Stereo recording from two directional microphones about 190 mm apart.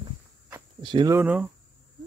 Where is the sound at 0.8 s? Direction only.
25° right (ahead or behind).